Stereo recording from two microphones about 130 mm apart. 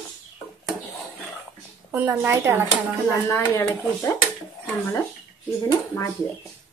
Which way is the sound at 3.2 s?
20° left (ahead or behind).